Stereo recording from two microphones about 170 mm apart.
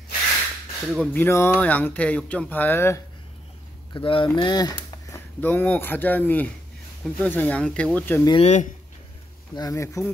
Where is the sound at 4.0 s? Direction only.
30° left (ahead or behind).